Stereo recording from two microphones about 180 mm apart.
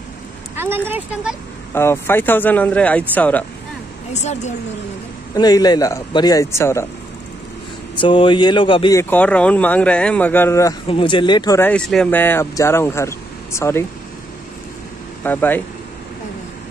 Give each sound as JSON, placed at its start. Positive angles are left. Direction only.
{"t": 0.6, "sound": "speech", "side_deg": -10}
{"t": 1.7, "sound": "speech", "side_deg": 15}
{"t": 4.1, "sound": "a woman's voice", "side_deg": 40}
{"t": 5.3, "sound": "a man's voice", "side_deg": 20}
{"t": 7.9, "sound": "a man's voice", "side_deg": 25}
{"t": 8.9, "sound": "speech", "side_deg": 10}
{"t": 10.9, "sound": "a man's voice", "side_deg": 30}
{"t": 11.7, "sound": "speech", "side_deg": 5}
{"t": 15.2, "sound": "speech", "side_deg": 10}